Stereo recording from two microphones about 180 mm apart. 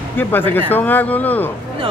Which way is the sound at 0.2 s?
10° left (ahead or behind).